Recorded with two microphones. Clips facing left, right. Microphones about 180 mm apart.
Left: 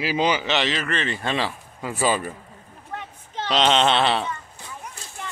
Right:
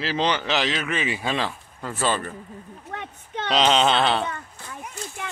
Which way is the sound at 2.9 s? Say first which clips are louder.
Even; 65° right (ahead or behind).